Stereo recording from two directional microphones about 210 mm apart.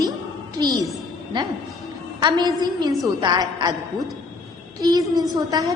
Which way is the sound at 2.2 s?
20° right (ahead or behind).